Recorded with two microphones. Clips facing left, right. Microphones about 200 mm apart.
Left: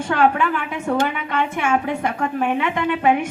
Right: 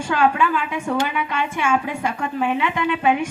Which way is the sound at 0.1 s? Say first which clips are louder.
Left 1 dB; 55° left (ahead or behind).